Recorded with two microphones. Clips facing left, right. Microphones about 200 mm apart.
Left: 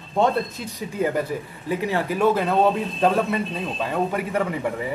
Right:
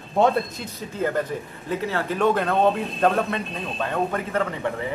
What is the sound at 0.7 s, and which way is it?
A man's voice, 15° left (ahead or behind).